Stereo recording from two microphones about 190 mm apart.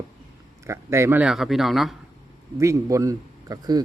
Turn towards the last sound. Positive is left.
turn(degrees=-20)  # may be behind; listen again after turning